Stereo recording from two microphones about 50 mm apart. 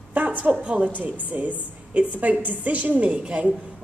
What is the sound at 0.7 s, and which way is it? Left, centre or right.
A woman's voice, right.